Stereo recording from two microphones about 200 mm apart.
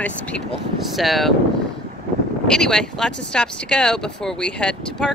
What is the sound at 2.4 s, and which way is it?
Speech, 5° left (ahead or behind).